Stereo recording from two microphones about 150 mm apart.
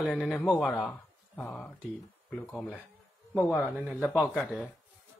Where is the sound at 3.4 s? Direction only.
5° right (ahead or behind).